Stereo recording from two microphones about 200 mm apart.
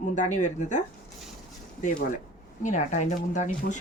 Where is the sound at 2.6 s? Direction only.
40° left (ahead or behind).